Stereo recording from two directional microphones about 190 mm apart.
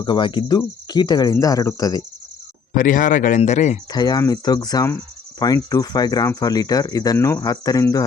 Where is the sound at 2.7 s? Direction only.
45° left (ahead or behind).